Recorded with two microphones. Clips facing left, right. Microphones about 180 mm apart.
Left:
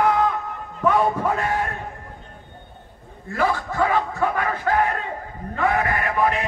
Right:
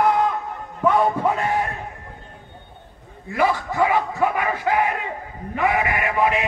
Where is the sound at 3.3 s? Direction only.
15° right (ahead or behind).